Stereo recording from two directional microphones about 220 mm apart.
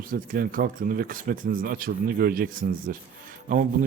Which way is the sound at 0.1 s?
40° right (ahead or behind).